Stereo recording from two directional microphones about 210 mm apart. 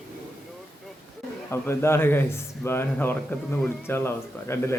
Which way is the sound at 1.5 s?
10° left (ahead or behind).